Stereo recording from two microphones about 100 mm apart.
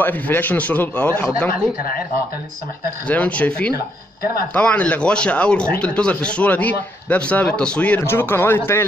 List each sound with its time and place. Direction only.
0.0 s speech: 20° left (ahead or behind)
3.1 s speech: 15° left (ahead or behind)
8.0 s speech: 25° left (ahead or behind)